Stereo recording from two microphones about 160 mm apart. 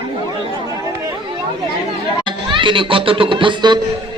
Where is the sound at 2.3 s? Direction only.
30° right (ahead or behind).